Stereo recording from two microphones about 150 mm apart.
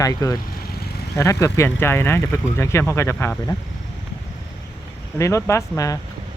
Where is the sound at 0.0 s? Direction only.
20° left (ahead or behind).